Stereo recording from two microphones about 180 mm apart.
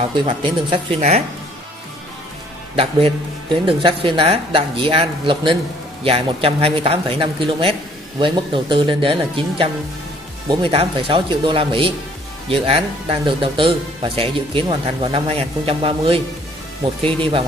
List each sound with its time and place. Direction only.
0.1 s speech: 25° right (ahead or behind)
2.7 s speech: 30° right (ahead or behind)